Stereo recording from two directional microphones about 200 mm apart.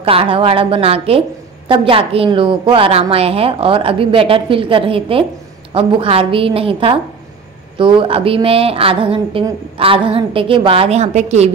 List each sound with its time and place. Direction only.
0.0 s a woman's voice: 30° right (ahead or behind)